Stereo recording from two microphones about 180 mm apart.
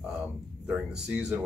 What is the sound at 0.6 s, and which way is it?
Speech, 5° right (ahead or behind).